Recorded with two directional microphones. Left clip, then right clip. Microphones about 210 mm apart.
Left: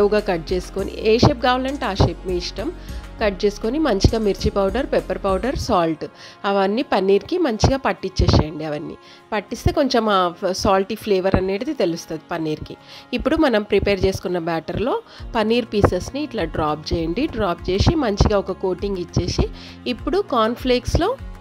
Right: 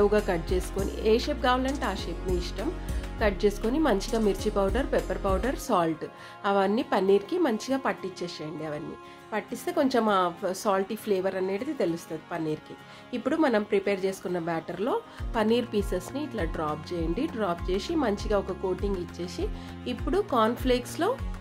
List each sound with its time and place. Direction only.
0.0 s a woman's voice: 30° left (ahead or behind)